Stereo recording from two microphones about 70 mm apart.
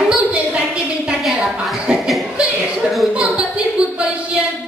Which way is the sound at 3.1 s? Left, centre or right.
Centre.